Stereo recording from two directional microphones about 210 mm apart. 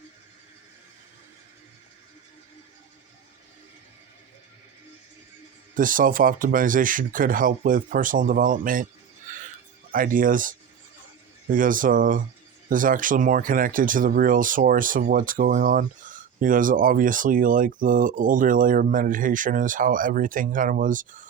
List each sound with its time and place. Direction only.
5.7 s speech: 40° right (ahead or behind)
9.3 s a sound: 40° right (ahead or behind)
9.9 s speech: 40° right (ahead or behind)